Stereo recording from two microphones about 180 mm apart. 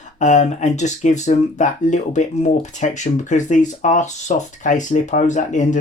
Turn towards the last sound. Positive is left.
turn(degrees=45)  # may be behind; listen again after turning